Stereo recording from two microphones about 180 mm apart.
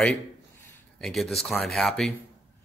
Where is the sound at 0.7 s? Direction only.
Centre (ahead or behind).